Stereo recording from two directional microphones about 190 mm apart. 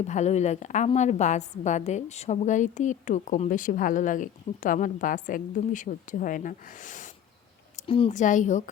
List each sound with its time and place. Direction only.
0.0 s a woman's voice: 35° left (ahead or behind)
7.8 s a woman's voice: 30° left (ahead or behind)